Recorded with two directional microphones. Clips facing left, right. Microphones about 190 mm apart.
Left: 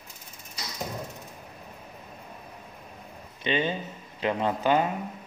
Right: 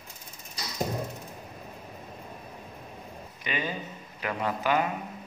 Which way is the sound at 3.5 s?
25° left (ahead or behind).